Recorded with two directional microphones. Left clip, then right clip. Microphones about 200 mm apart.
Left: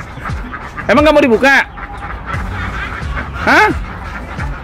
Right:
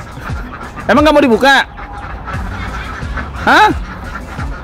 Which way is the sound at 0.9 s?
10° right (ahead or behind).